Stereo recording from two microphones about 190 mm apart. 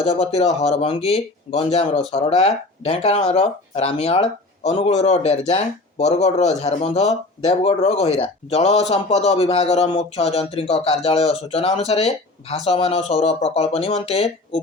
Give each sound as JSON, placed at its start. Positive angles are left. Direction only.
{"t": 0.0, "sound": "speech", "side_deg": 35}